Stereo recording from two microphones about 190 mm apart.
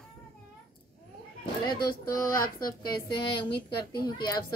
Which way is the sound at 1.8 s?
50° left (ahead or behind).